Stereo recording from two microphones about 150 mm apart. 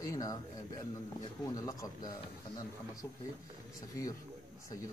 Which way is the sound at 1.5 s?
20° left (ahead or behind).